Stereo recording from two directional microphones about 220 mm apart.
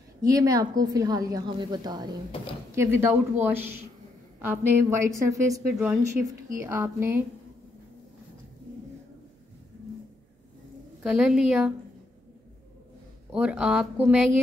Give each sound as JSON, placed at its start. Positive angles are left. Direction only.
{"t": 0.2, "sound": "a woman's voice", "side_deg": -15}
{"t": 11.0, "sound": "speech", "side_deg": -5}
{"t": 13.3, "sound": "speech", "side_deg": -5}